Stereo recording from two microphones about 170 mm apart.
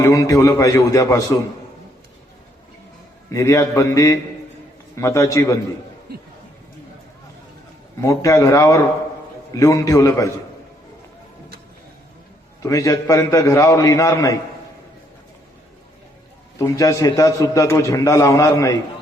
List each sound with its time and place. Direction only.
0.0 s a man's voice: 20° left (ahead or behind)
3.3 s mantra: 15° left (ahead or behind)
8.0 s mantra: 20° left (ahead or behind)
9.5 s a man's voice: 20° left (ahead or behind)
12.6 s a man's voice: 20° left (ahead or behind)
16.6 s a man's voice: 20° left (ahead or behind)